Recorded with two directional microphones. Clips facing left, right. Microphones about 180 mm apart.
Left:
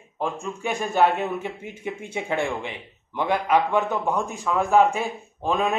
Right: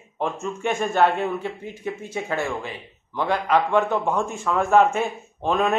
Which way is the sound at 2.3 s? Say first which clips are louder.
Left 1 dB; 25° left (ahead or behind).